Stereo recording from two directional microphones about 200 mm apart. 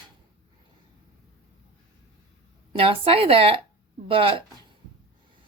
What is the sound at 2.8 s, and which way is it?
A woman's voice, 25° right (ahead or behind).